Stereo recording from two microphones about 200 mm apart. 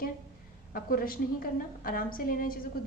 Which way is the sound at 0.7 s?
45° left (ahead or behind).